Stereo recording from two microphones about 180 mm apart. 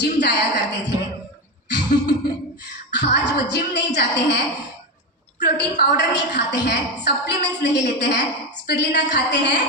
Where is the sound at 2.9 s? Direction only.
70° left (ahead or behind).